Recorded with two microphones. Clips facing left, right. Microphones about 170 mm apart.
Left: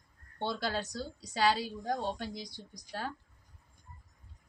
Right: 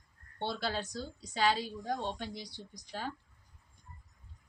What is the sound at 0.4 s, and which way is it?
A woman's voice, 45° left (ahead or behind).